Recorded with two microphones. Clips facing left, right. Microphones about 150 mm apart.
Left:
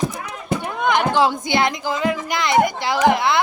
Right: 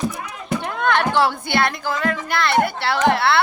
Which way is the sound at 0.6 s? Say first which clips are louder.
Even; 15° left (ahead or behind).